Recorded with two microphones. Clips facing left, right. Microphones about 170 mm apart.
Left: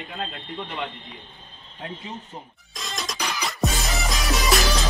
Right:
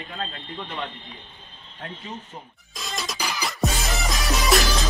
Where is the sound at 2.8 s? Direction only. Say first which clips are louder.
Even; centre (ahead or behind).